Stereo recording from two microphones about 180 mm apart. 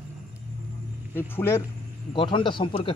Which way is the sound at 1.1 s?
15° left (ahead or behind).